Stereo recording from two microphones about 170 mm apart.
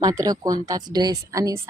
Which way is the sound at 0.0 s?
20° right (ahead or behind).